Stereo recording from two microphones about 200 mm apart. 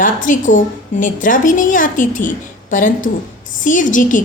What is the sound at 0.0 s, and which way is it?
A woman's voice, 40° left (ahead or behind).